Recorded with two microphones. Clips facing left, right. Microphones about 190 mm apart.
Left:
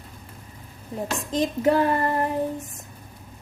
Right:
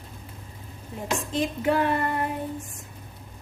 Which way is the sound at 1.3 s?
40° left (ahead or behind).